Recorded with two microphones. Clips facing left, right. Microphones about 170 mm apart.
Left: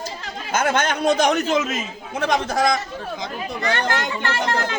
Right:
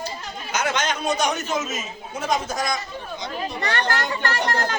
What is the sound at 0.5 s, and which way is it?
Speech, 55° left (ahead or behind).